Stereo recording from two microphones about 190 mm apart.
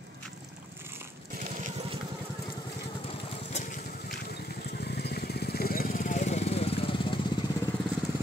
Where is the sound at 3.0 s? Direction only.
30° left (ahead or behind).